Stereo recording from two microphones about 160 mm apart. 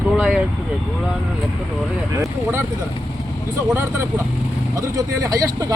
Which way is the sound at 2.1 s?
15° right (ahead or behind).